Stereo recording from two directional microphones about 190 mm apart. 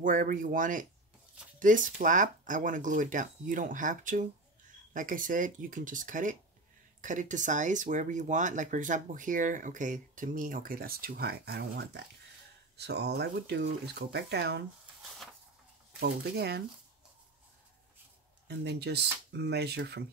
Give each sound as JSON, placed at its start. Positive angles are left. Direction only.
{"t": 0.0, "sound": "speech", "side_deg": -45}
{"t": 16.0, "sound": "speech", "side_deg": -60}
{"t": 18.5, "sound": "speech", "side_deg": -60}